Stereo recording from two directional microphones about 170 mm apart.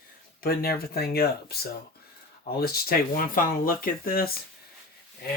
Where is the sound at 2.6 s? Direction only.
65° left (ahead or behind).